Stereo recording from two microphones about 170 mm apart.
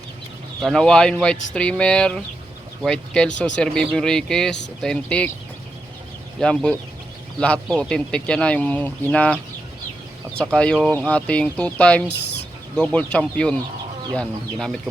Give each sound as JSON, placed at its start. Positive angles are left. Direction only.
{"t": 0.6, "sound": "speech", "side_deg": 0}
{"t": 6.4, "sound": "speech", "side_deg": 5}
{"t": 10.5, "sound": "speech", "side_deg": 5}
{"t": 12.0, "sound": "a sound", "side_deg": 80}
{"t": 12.7, "sound": "speech", "side_deg": 5}